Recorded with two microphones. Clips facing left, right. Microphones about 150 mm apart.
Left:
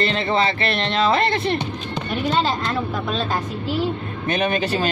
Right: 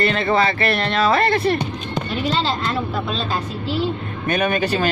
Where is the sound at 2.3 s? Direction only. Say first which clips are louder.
Left 2 dB; 50° left (ahead or behind).